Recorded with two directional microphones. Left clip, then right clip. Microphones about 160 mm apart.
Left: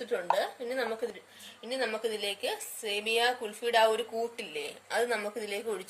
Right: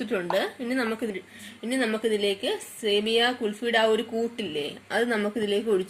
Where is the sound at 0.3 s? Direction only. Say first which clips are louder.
Right 5 dB; 35° right (ahead or behind).